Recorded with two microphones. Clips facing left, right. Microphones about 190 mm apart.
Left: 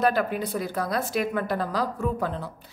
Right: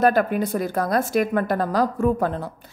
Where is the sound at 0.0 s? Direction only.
50° right (ahead or behind).